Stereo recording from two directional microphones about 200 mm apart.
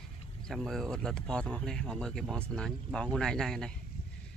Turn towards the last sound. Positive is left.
turn(degrees=5)  # may be behind; listen again after turning